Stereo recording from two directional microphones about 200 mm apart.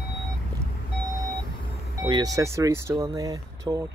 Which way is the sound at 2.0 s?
20° right (ahead or behind).